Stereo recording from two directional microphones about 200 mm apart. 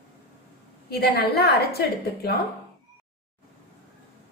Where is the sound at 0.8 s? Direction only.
50° left (ahead or behind).